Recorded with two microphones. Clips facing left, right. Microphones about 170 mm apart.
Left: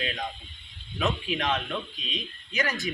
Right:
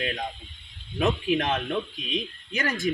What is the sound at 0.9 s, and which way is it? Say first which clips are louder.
A man's voice: right 5 dB; 50° right (ahead or behind).